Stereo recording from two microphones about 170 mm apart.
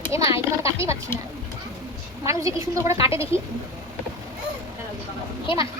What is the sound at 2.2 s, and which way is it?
A woman's voice, 20° right (ahead or behind).